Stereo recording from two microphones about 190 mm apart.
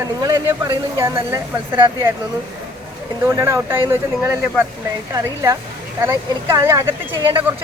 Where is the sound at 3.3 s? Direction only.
15° right (ahead or behind).